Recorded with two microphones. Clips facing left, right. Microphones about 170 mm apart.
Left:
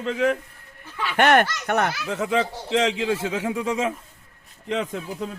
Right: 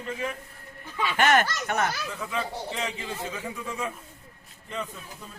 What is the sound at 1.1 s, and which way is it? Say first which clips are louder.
Speech: left 5 dB; 60° left (ahead or behind).